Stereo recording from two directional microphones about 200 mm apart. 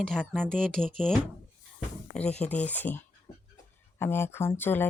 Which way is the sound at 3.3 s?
15° left (ahead or behind).